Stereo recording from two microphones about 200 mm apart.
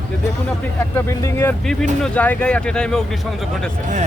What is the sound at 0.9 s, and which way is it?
Speech, 10° left (ahead or behind).